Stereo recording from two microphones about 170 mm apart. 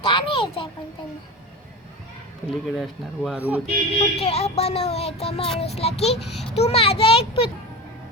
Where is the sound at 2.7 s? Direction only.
Centre (ahead or behind).